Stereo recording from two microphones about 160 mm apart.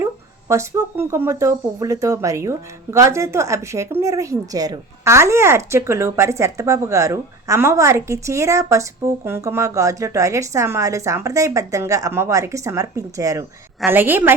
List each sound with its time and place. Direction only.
0.0 s a woman's voice: 15° right (ahead or behind)